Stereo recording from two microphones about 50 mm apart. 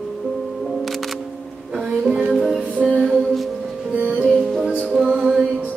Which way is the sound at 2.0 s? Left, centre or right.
Right.